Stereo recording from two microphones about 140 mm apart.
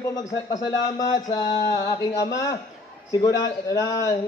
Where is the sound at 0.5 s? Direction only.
25° left (ahead or behind).